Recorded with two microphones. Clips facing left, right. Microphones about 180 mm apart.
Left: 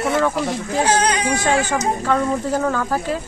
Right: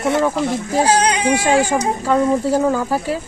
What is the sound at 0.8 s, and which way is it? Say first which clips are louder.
Speech: right 2 dB; 30° right (ahead or behind).